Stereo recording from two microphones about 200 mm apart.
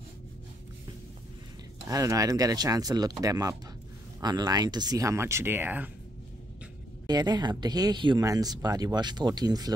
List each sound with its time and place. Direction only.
1.9 s speech: 15° right (ahead or behind)
7.1 s speech: 20° right (ahead or behind)